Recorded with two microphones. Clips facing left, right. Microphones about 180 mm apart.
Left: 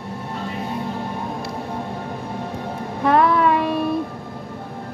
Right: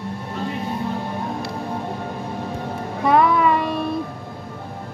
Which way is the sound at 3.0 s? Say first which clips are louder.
Even; 5° right (ahead or behind).